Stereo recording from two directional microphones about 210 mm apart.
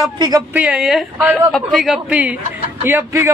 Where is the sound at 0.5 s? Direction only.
5° right (ahead or behind).